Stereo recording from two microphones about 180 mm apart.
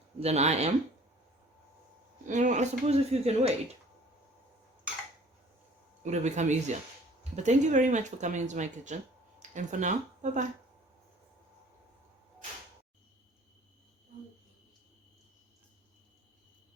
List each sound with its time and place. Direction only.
0.2 s speech: 35° right (ahead or behind)
2.2 s speech: 45° right (ahead or behind)
6.1 s speech: 40° right (ahead or behind)